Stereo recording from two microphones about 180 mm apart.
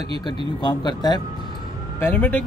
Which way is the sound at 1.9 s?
10° left (ahead or behind).